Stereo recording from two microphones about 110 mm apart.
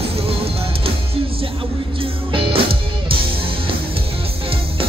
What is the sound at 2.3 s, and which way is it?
Music, 55° right (ahead or behind).